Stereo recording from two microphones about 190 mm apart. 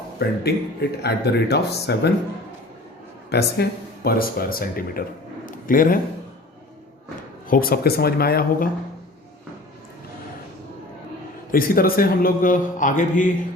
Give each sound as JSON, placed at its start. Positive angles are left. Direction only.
{"t": 0.2, "sound": "speech", "side_deg": 60}
{"t": 3.2, "sound": "speech", "side_deg": 60}
{"t": 5.5, "sound": "a sound", "side_deg": 45}
{"t": 7.4, "sound": "speech", "side_deg": 50}
{"t": 11.5, "sound": "speech", "side_deg": 50}